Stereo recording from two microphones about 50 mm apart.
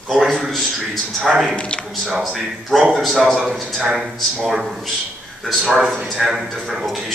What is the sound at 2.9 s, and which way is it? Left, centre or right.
Speech, centre.